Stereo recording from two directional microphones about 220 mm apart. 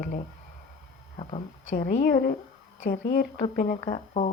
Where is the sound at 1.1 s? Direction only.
25° left (ahead or behind).